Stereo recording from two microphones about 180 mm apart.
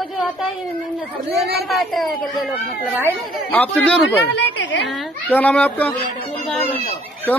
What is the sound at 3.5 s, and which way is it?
Speech, 10° left (ahead or behind).